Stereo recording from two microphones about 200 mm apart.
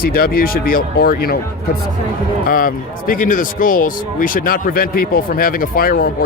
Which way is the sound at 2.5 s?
45° left (ahead or behind).